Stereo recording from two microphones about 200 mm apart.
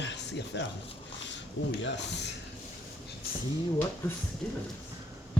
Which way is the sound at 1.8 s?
60° left (ahead or behind).